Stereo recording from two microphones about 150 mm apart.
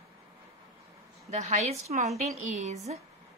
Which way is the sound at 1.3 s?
50° right (ahead or behind).